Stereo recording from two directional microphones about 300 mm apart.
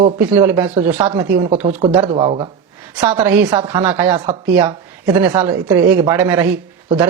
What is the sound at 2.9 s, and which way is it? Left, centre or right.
A woman's voice, centre.